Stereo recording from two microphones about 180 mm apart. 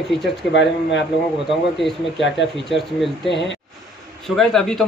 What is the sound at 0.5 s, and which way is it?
Speech, 80° left.